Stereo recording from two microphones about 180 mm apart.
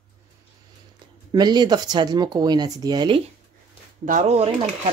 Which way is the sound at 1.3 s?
25° right (ahead or behind).